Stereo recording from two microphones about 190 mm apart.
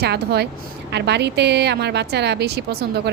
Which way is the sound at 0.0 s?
60° right (ahead or behind).